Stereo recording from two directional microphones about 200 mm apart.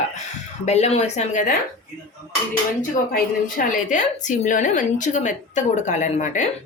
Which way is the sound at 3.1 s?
45° left (ahead or behind).